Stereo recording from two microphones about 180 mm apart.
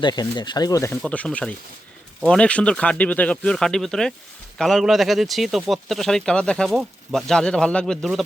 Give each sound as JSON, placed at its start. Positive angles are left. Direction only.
{"t": 0.0, "sound": "speech", "side_deg": 25}
{"t": 1.0, "sound": "speech", "side_deg": 5}